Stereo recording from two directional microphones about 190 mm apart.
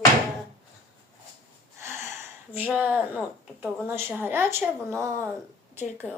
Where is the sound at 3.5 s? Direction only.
10° right (ahead or behind).